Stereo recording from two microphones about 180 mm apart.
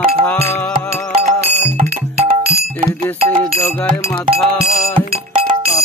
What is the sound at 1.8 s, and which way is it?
Music, 35° right (ahead or behind).